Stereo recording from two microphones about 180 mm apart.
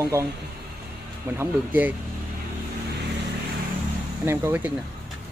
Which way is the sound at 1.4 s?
10° right (ahead or behind).